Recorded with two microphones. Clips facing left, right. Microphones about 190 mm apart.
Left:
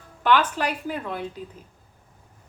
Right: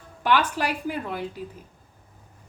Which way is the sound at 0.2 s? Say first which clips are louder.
Left 2 dB; 10° right (ahead or behind).